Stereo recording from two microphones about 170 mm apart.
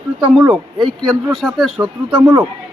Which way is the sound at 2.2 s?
15° right (ahead or behind).